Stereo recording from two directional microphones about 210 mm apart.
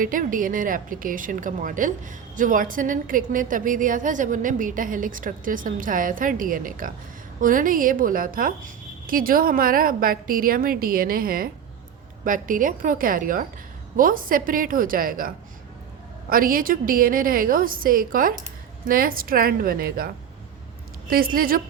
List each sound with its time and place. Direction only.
0.0 s a woman's voice: 40° right (ahead or behind)
16.3 s a woman's voice: 45° right (ahead or behind)
21.1 s a woman's voice: 45° right (ahead or behind)